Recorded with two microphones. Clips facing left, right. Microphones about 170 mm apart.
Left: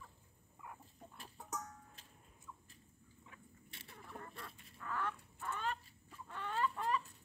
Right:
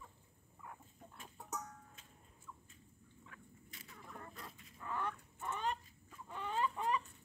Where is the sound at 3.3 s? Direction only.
30° left (ahead or behind).